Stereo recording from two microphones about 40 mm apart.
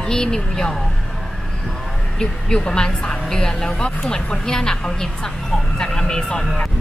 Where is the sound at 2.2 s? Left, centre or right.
Centre.